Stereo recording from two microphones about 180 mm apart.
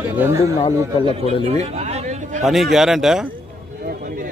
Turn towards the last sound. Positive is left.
turn(degrees=0)  # may be behind; listen again after turning